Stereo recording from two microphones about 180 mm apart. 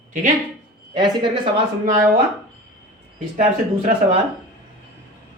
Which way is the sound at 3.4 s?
40° right (ahead or behind).